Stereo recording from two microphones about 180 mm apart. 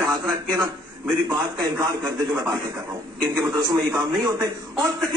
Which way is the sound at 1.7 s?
15° right (ahead or behind).